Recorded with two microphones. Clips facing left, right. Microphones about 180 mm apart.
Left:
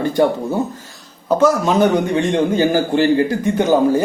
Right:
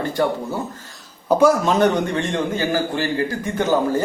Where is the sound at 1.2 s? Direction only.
10° right (ahead or behind).